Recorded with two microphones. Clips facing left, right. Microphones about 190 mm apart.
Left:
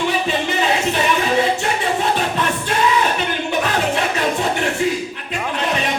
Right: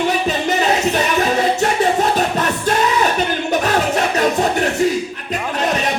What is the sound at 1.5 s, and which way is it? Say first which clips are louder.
Music: right 5 dB; 40° right (ahead or behind).